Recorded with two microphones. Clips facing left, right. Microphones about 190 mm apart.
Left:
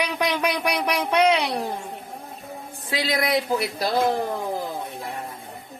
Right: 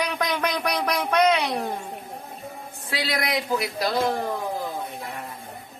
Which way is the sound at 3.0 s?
25° left (ahead or behind).